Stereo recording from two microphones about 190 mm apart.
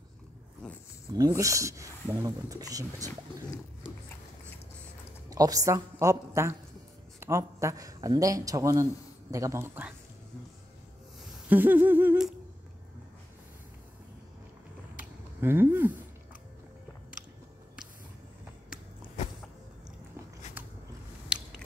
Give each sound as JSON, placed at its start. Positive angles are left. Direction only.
{"t": 1.1, "sound": "speech", "side_deg": -15}
{"t": 5.3, "sound": "speech", "side_deg": -20}
{"t": 11.4, "sound": "speech", "side_deg": -10}
{"t": 15.0, "sound": "a sound", "side_deg": -10}
{"t": 20.6, "sound": "creak", "side_deg": -10}
{"t": 21.3, "sound": "mechanisms", "side_deg": -5}